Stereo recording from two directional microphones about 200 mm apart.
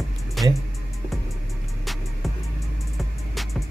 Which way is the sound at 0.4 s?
Centre (ahead or behind).